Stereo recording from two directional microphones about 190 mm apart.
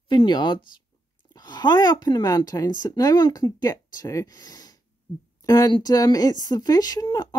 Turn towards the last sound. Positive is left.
turn(degrees=20)  # may be behind; listen again after turning